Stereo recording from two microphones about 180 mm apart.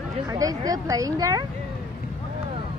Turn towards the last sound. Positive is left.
turn(degrees=-20)  # may be behind; listen again after turning